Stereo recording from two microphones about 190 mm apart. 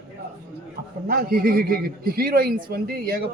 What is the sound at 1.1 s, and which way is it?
A man's voice, 50° right (ahead or behind).